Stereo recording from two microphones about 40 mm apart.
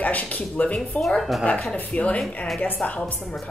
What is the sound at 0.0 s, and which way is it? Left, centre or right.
Speech, left.